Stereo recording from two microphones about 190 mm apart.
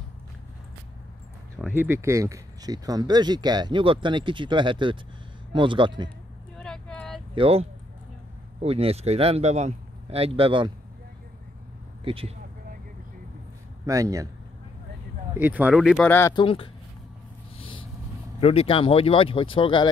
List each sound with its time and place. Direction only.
1.6 s speech: 10° right (ahead or behind); by 6.0 s 25° right (ahead or behind)
6.6 s vehicle: 5° left (ahead or behind)
7.3 s speech: 30° right (ahead or behind)
12.0 s speech: 30° right (ahead or behind)
13.8 s speech: 15° right (ahead or behind)
15.3 s speech: 10° right (ahead or behind)
16.1 s speech: 15° left (ahead or behind)
16.3 s speech: 30° left (ahead or behind)
17.6 s vehicle: 25° left (ahead or behind)
18.4 s speech: 30° left (ahead or behind)